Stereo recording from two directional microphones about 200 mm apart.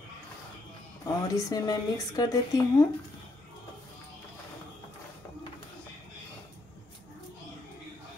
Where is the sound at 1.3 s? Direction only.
15° left (ahead or behind).